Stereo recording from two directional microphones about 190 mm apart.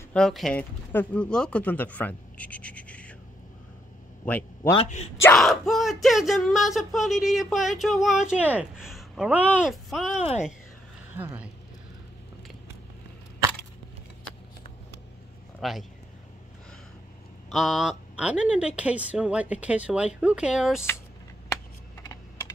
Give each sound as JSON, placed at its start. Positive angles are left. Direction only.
{"t": 0.1, "sound": "speech", "side_deg": 0}
{"t": 4.3, "sound": "a man's voice", "side_deg": 10}
{"t": 10.1, "sound": "speech", "side_deg": 35}
{"t": 11.1, "sound": "speech", "side_deg": -10}
{"t": 15.6, "sound": "speech", "side_deg": 0}
{"t": 17.5, "sound": "speech", "side_deg": 0}